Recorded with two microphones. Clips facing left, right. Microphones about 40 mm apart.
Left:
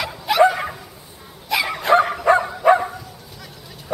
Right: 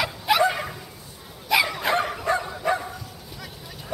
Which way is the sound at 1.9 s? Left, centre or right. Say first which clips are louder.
Left 8 dB; centre.